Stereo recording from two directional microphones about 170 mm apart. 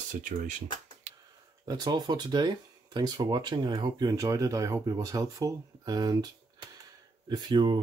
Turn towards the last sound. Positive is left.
turn(degrees=-25)  # may be behind; listen again after turning